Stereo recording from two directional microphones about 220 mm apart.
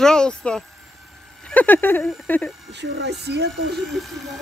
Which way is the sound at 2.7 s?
50° right (ahead or behind).